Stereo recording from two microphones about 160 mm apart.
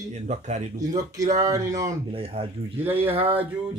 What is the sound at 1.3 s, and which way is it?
Speech, 20° right (ahead or behind).